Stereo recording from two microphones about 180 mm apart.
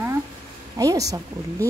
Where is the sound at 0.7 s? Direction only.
20° right (ahead or behind).